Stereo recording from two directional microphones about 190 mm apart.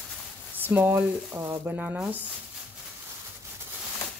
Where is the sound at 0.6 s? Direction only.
10° right (ahead or behind).